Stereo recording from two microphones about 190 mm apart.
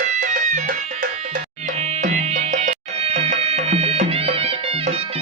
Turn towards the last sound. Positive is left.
turn(degrees=-30)  # may be behind; listen again after turning